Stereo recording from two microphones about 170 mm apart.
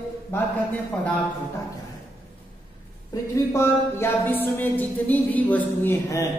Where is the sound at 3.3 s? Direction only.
15° left (ahead or behind).